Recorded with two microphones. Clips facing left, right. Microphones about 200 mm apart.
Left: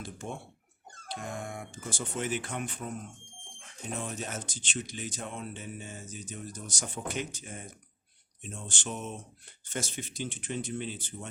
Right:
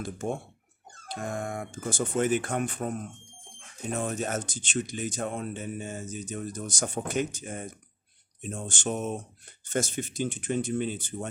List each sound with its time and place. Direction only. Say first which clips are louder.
0.0 s speech: right 7 dB; 45° right (ahead or behind)